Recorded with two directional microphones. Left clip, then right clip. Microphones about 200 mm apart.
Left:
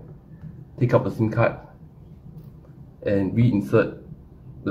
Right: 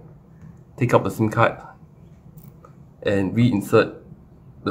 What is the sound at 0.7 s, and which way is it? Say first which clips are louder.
Speech: right 2 dB; 30° right (ahead or behind).